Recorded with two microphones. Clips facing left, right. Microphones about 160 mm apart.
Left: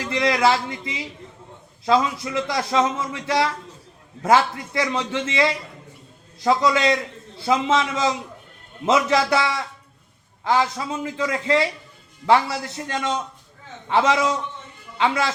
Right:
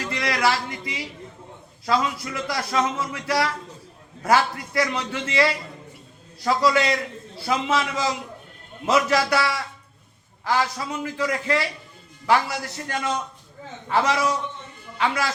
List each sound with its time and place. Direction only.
0.0 s a man's voice: 20° left (ahead or behind)